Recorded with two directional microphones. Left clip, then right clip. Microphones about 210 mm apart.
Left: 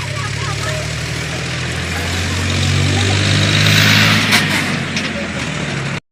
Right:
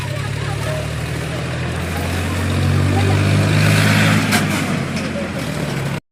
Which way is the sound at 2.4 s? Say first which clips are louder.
Left 3 dB; 35° right (ahead or behind).